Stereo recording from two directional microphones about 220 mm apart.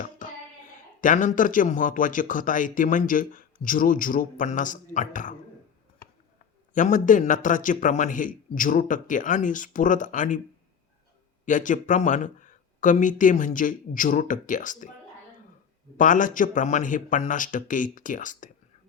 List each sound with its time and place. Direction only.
0.2 s child singing: 35° left (ahead or behind)
1.0 s speech: 35° left (ahead or behind)
6.7 s speech: 35° left (ahead or behind)
11.4 s speech: 35° left (ahead or behind)
16.0 s speech: 35° left (ahead or behind)